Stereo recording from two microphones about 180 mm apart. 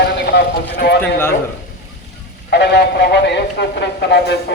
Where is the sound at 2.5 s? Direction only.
65° left (ahead or behind).